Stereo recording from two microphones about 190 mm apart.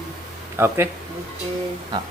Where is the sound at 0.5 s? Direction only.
15° right (ahead or behind).